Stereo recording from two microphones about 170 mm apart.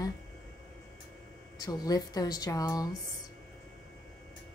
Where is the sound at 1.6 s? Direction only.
20° left (ahead or behind).